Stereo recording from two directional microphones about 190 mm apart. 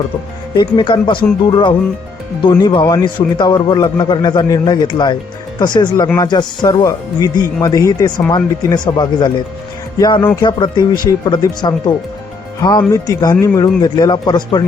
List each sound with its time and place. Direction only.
0.5 s a man's voice: 25° left (ahead or behind)